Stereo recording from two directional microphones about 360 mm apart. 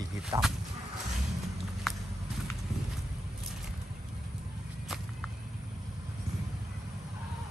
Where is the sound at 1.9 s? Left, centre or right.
Centre.